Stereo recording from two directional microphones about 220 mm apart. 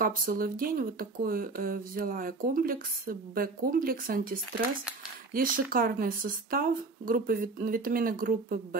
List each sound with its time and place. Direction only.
0.0 s speech: 40° right (ahead or behind)